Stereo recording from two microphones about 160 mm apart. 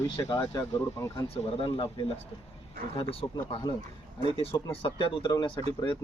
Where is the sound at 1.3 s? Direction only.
35° left (ahead or behind).